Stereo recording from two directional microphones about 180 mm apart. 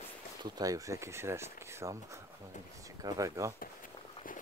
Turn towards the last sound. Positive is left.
turn(degrees=-20)  # may be behind; listen again after turning